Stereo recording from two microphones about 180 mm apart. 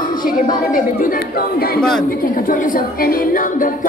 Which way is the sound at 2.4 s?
50° left (ahead or behind).